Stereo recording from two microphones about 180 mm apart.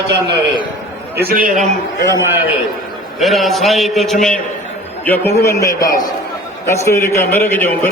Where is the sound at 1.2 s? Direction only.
55° right (ahead or behind).